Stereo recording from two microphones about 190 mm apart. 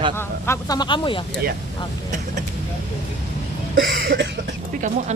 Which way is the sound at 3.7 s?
70° right (ahead or behind).